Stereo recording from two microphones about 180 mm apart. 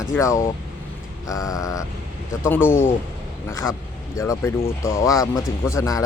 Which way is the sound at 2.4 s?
10° left (ahead or behind).